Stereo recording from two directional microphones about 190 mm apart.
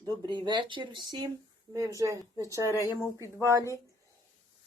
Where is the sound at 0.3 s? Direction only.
25° right (ahead or behind).